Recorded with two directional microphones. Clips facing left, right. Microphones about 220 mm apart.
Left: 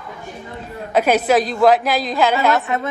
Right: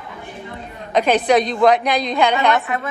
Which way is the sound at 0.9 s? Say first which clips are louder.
Even; 5° left (ahead or behind).